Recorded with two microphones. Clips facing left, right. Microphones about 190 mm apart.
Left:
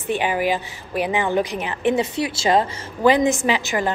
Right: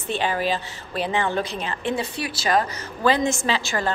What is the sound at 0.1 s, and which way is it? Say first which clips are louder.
A woman's voice: left 3 dB; 15° left (ahead or behind).